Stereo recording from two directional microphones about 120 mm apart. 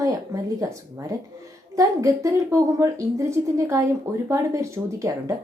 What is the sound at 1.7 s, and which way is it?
A woman's voice, 30° right (ahead or behind).